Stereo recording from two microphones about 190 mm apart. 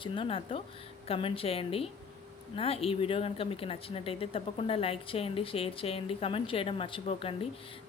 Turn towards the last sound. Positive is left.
turn(degrees=30)  # may be behind; listen again after turning